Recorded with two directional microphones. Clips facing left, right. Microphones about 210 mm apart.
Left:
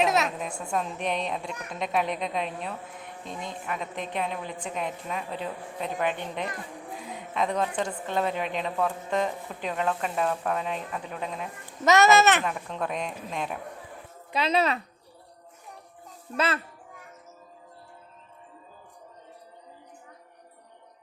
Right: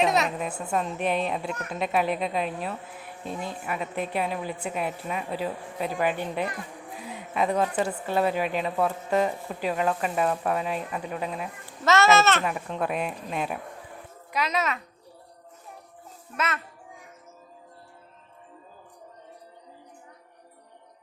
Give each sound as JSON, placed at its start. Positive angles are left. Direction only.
{"t": 0.0, "sound": "a woman's voice", "side_deg": 0}
{"t": 6.9, "sound": "a sound", "side_deg": -5}
{"t": 7.8, "sound": "a woman's voice", "side_deg": -5}
{"t": 11.9, "sound": "a child's voice", "side_deg": 15}
{"t": 12.5, "sound": "speech", "side_deg": -5}
{"t": 14.3, "sound": "speech", "side_deg": 30}